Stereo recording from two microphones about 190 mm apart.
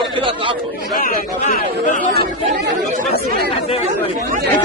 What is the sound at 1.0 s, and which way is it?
Speech, 45° left (ahead or behind).